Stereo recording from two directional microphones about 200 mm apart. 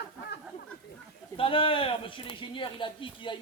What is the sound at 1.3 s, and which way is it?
Speech, 25° left (ahead or behind).